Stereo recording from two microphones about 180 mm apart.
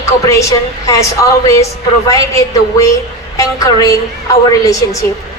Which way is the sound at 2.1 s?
20° left (ahead or behind).